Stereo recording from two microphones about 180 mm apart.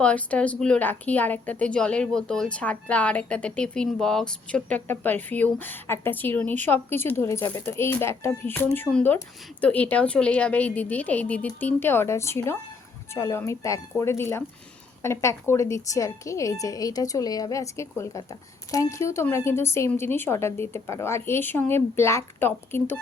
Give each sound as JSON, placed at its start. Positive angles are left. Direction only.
{"t": 0.0, "sound": "a woman's voice", "side_deg": 5}